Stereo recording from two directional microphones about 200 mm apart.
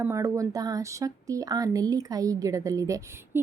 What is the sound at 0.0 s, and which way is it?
Speech, 15° right (ahead or behind).